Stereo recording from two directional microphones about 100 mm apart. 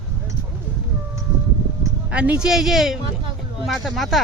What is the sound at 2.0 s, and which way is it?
Speech, 10° right (ahead or behind).